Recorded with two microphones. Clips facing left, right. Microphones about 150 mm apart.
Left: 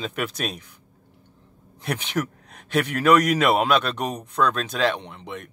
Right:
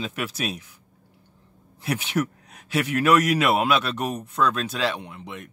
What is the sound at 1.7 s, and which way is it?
A man's voice, 10° right (ahead or behind).